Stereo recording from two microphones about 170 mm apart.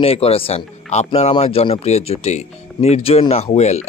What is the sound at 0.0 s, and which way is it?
Speech, 35° left (ahead or behind).